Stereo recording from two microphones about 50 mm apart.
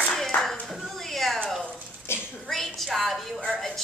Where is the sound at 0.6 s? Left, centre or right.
Centre.